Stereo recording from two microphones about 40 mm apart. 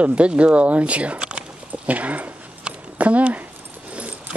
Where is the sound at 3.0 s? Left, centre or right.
Right.